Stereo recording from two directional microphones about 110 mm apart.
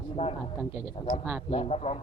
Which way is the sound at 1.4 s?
65° left (ahead or behind).